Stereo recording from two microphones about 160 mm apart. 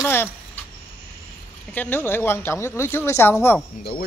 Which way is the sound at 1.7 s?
10° left (ahead or behind).